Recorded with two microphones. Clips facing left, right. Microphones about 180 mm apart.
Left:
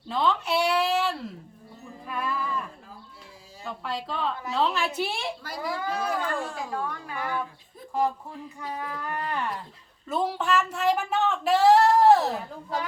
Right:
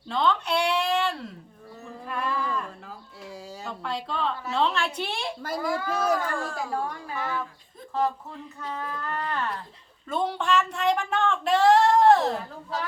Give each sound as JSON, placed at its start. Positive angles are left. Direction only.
{"t": 0.1, "sound": "a sound", "side_deg": 5}
{"t": 3.7, "sound": "a woman's voice", "side_deg": 0}
{"t": 5.4, "sound": "speech", "side_deg": -45}
{"t": 6.3, "sound": "speech", "side_deg": 20}
{"t": 6.7, "sound": "a woman's voice", "side_deg": -30}
{"t": 7.9, "sound": "speech", "side_deg": 10}